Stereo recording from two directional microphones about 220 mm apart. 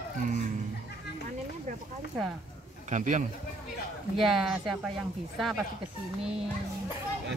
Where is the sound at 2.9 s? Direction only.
35° right (ahead or behind).